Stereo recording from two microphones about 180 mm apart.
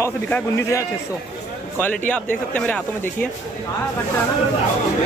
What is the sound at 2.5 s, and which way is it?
Speech, 5° left (ahead or behind).